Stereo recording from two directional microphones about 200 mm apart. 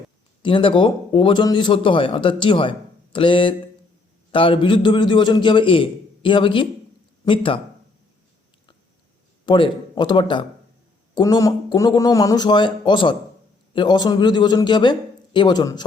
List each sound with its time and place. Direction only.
0.4 s a man's voice: 25° left (ahead or behind)
9.5 s a man's voice: 25° left (ahead or behind)